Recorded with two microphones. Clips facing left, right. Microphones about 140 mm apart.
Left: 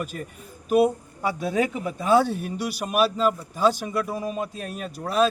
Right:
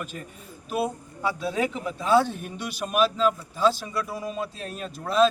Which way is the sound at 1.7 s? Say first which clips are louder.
Even; 15° left (ahead or behind).